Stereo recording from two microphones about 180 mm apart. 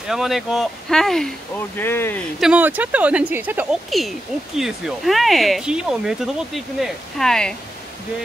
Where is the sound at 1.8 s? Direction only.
10° left (ahead or behind).